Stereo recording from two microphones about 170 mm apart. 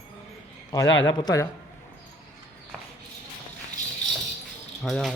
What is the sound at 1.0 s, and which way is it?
Speech, 20° left (ahead or behind).